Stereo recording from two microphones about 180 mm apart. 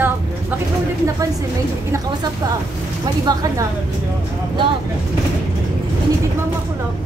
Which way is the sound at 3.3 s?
20° right (ahead or behind).